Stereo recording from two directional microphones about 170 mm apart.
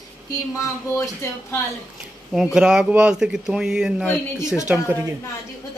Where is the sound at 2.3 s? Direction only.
5° right (ahead or behind).